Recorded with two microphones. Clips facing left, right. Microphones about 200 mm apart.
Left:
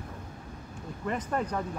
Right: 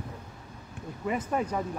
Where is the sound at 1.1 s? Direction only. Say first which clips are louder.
Right 2 dB; 10° right (ahead or behind).